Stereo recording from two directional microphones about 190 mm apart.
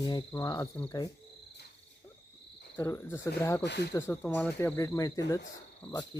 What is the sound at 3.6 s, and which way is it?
Speech, 65° left (ahead or behind).